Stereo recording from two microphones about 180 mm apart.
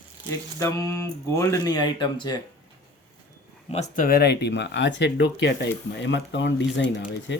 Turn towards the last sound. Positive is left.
turn(degrees=85)